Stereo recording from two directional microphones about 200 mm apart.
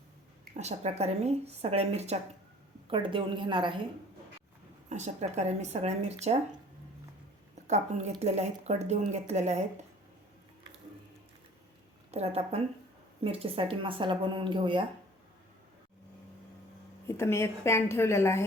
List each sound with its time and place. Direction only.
0.5 s a woman's voice: 35° right (ahead or behind)
4.9 s a woman's voice: 35° right (ahead or behind)
7.7 s a woman's voice: 35° right (ahead or behind)
12.1 s a woman's voice: 30° right (ahead or behind)
17.1 s a woman's voice: 15° left (ahead or behind)